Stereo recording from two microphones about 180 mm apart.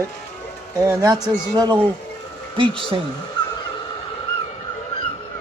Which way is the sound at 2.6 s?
30° right (ahead or behind).